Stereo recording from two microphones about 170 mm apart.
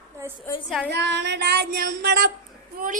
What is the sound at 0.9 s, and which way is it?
Child singing, 85° right.